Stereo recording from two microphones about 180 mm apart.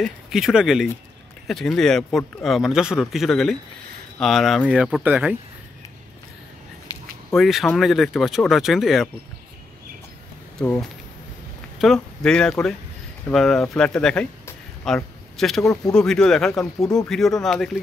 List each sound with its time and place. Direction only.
0.0 s speech: 5° right (ahead or behind)
7.3 s speech: centre (ahead or behind)
10.6 s speech: 10° left (ahead or behind)
15.6 s speech: 20° left (ahead or behind)
15.9 s speech: 5° left (ahead or behind)